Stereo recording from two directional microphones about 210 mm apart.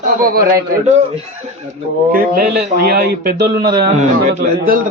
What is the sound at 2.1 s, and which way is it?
Speech, 45° right (ahead or behind).